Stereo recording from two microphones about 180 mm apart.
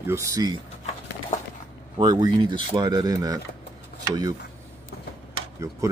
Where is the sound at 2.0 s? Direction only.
20° right (ahead or behind).